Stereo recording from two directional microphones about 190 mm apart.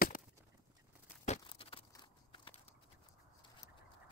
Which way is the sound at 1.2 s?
35° left (ahead or behind).